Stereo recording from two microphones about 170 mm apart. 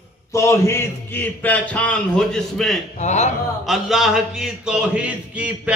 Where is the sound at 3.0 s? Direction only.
45° left (ahead or behind).